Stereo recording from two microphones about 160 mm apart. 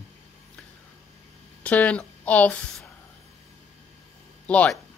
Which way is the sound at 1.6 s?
10° left (ahead or behind).